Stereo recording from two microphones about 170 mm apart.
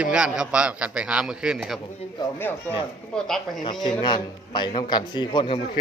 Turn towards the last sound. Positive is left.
turn(degrees=30)  # may be behind; listen again after turning